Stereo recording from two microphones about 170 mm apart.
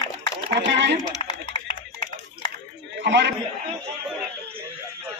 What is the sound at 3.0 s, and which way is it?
Speech, 90° right.